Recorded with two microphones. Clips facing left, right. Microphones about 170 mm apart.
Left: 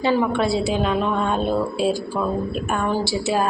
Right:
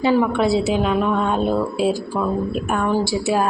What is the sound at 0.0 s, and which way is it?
Speech, 10° right (ahead or behind).